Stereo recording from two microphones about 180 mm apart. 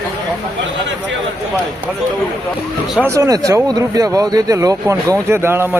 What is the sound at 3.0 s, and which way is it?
Speech, 15° right (ahead or behind).